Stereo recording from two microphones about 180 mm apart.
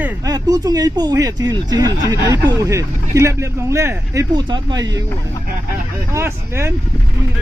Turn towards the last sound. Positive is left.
turn(degrees=-15)  # may be behind; listen again after turning